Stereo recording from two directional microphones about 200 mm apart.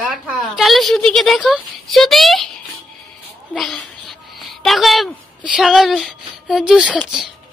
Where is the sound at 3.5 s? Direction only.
Centre (ahead or behind).